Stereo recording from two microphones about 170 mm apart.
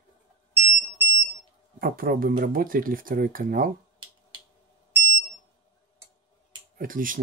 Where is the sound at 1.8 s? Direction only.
60° right (ahead or behind).